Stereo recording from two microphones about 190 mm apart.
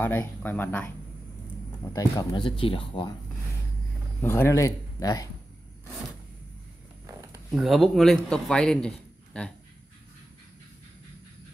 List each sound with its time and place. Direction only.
0.0 s speech: 10° left (ahead or behind)
2.0 s speech: 25° left (ahead or behind)
4.2 s speech: 15° left (ahead or behind)
7.1 s a sound: 15° right (ahead or behind)
7.5 s a man's voice: centre (ahead or behind)